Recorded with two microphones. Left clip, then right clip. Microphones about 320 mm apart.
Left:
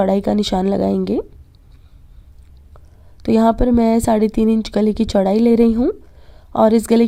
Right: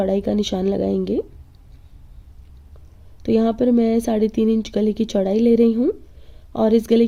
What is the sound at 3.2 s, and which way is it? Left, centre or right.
Speech, left.